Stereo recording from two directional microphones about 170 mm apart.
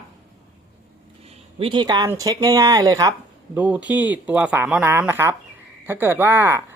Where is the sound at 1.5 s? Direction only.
30° right (ahead or behind).